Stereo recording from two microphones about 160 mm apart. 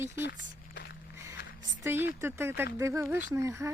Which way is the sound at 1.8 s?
15° right (ahead or behind).